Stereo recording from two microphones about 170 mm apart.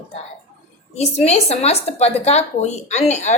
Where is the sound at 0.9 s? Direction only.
35° left (ahead or behind).